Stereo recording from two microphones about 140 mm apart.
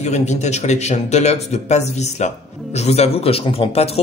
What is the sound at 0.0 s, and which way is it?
Speech, 55° left (ahead or behind).